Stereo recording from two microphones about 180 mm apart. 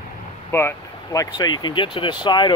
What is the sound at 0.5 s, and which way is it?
Speech, 10° left (ahead or behind).